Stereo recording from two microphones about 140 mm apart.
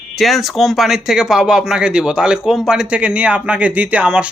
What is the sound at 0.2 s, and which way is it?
A man's voice, centre (ahead or behind).